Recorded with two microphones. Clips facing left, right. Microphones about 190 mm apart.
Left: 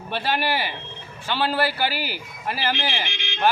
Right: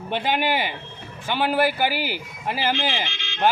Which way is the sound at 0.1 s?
20° right (ahead or behind).